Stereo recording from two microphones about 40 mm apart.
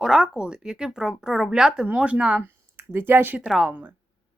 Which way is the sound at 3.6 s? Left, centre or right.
Right.